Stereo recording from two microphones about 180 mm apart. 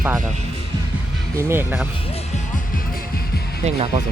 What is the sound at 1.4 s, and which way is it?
Speech, 10° right (ahead or behind).